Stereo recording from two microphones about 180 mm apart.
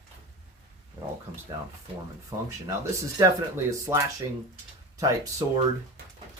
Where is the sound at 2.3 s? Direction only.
20° right (ahead or behind).